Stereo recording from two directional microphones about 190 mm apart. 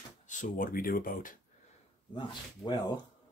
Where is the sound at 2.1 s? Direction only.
25° left (ahead or behind).